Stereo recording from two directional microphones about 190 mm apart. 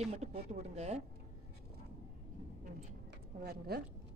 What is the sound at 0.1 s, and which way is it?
Speech, 35° right (ahead or behind).